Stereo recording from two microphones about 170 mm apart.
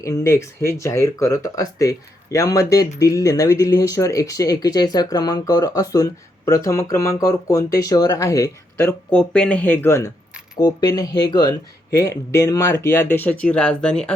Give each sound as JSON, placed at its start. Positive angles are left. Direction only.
{"t": 0.0, "sound": "speech", "side_deg": 15}